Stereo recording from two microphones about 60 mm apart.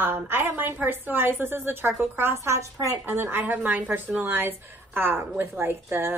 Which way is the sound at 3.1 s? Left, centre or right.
Right.